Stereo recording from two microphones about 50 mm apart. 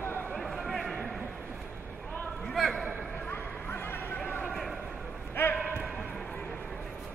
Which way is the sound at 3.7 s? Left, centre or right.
Left.